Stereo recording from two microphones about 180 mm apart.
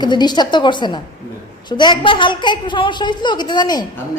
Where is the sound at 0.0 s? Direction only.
25° left (ahead or behind).